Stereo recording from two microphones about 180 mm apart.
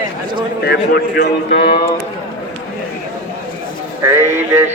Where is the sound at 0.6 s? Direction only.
65° left (ahead or behind).